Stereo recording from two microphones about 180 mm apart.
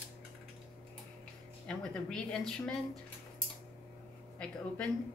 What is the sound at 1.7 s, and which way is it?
Speech, 5° left (ahead or behind).